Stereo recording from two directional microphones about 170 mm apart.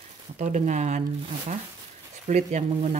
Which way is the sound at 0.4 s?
45° right (ahead or behind).